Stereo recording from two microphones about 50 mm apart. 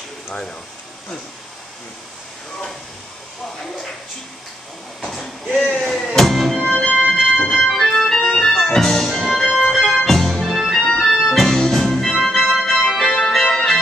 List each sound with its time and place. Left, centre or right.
0.3 s speech: centre
5.0 s a sound: centre
5.8 s music: centre
7.1 s organ: centre
11.0 s music: centre
11.8 s organ: centre
13.4 s music: centre